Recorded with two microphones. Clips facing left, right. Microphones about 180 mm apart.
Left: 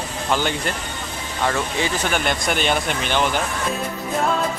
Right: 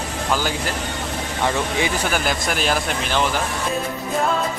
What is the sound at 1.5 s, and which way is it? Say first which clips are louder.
Speech: right 1 dB; 15° right (ahead or behind).